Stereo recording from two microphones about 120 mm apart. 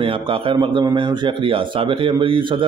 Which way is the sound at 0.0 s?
50° right (ahead or behind).